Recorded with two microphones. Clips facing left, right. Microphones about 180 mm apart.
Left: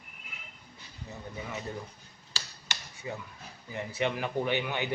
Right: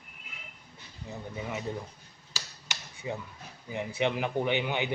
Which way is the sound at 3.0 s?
20° right (ahead or behind).